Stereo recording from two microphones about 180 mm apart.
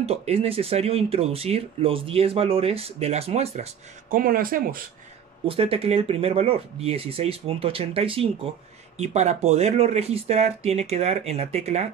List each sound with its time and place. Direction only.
0.0 s speech: 35° right (ahead or behind)
4.1 s speech: 50° right (ahead or behind)
5.5 s speech: 30° right (ahead or behind)